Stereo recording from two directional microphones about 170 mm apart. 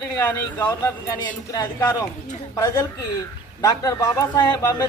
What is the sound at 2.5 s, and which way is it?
Speech, 20° left (ahead or behind).